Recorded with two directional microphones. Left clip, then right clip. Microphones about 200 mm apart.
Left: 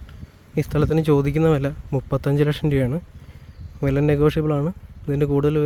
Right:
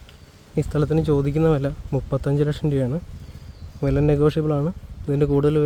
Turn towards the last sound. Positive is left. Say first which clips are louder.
# right 1 dB
turn(degrees=5)  # may be behind; listen again after turning